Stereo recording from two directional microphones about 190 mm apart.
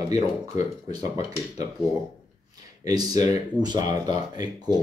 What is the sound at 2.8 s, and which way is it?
Speech, 20° right (ahead or behind).